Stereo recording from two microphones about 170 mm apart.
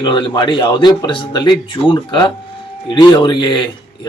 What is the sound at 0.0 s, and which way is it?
Speech, 30° left (ahead or behind).